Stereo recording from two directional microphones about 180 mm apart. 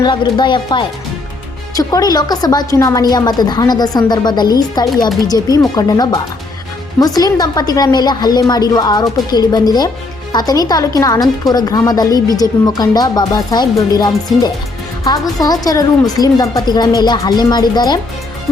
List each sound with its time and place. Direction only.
0.0 s a woman's voice: 25° left (ahead or behind)